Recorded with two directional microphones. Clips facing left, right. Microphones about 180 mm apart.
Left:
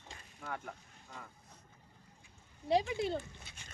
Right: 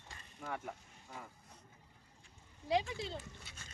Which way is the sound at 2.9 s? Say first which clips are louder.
Left 8 dB; 55° left (ahead or behind).